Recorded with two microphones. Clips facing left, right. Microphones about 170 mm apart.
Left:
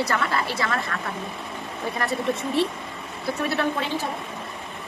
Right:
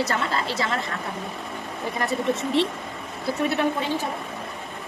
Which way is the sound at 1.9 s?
20° right (ahead or behind).